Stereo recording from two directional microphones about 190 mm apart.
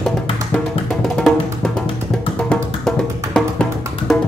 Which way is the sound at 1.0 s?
5° left (ahead or behind).